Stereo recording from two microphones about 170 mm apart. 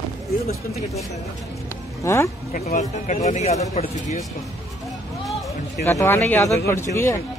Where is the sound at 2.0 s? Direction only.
15° left (ahead or behind).